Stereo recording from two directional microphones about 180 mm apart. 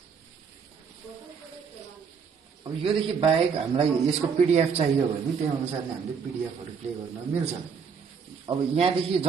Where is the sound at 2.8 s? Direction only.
30° right (ahead or behind).